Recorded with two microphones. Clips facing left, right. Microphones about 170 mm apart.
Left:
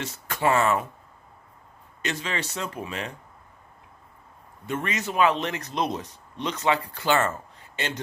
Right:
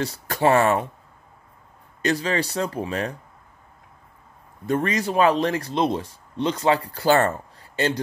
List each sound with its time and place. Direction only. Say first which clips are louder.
0.0 s speech: right 5 dB; 35° right (ahead or behind)
2.0 s speech: right 8 dB; 35° right (ahead or behind)
4.6 s speech: right 7 dB; 35° right (ahead or behind)